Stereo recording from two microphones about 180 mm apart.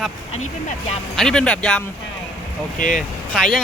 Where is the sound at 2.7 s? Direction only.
45° left (ahead or behind).